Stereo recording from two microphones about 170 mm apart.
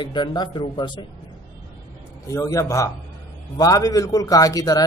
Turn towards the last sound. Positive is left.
turn(degrees=20)  # may be behind; listen again after turning